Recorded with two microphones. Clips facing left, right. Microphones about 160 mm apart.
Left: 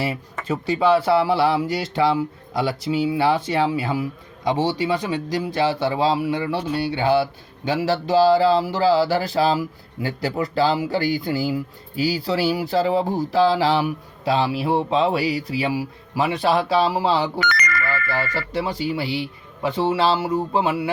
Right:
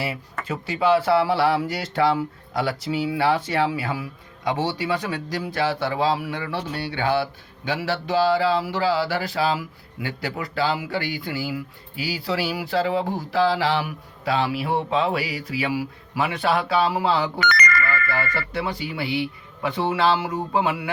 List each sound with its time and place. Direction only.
1.0 s speech: 20° left (ahead or behind)
7.9 s speech: 35° left (ahead or behind)
17.8 s speech: 10° left (ahead or behind)
18.5 s speech: 30° left (ahead or behind)